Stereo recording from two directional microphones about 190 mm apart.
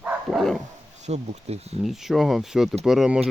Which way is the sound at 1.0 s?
35° right (ahead or behind).